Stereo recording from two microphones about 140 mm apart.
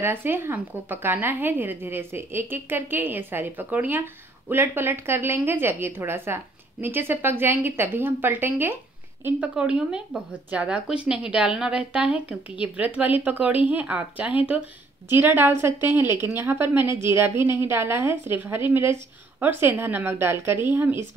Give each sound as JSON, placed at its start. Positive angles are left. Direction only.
{"t": 0.0, "sound": "a woman's voice", "side_deg": -15}